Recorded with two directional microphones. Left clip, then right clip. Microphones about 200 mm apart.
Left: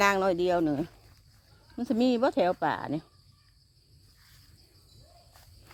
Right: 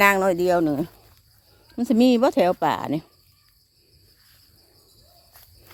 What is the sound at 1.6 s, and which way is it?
Speech, 35° right (ahead or behind).